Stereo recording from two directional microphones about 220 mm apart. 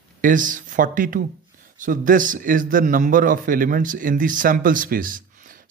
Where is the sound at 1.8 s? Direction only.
35° right (ahead or behind).